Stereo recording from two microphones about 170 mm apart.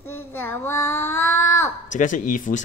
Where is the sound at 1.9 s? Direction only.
50° left (ahead or behind).